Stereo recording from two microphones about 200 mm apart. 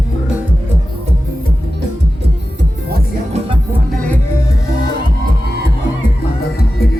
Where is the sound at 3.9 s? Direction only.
5° left (ahead or behind).